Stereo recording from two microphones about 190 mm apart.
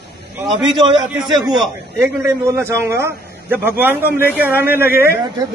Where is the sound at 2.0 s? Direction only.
15° right (ahead or behind).